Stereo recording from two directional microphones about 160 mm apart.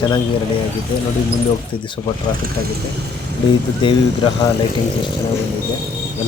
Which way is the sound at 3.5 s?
30° left (ahead or behind).